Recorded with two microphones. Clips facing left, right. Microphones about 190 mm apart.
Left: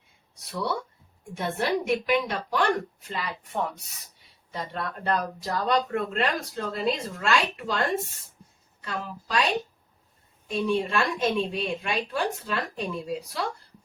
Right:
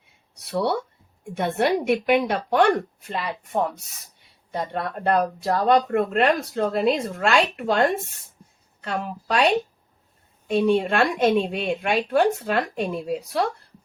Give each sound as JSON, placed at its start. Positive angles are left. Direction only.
{"t": 0.5, "sound": "speech", "side_deg": -65}
{"t": 10.5, "sound": "speech", "side_deg": -65}